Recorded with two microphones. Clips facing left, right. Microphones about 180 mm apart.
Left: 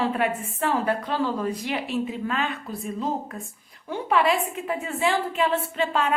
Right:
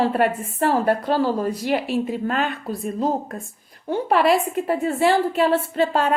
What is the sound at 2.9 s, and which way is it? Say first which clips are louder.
A woman's voice: right 5 dB; 40° right (ahead or behind).